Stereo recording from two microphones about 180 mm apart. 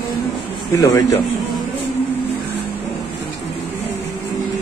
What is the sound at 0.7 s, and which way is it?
Speech, 20° left (ahead or behind).